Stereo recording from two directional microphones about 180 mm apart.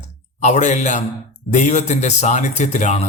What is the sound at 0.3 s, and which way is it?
Speech, 40° left (ahead or behind).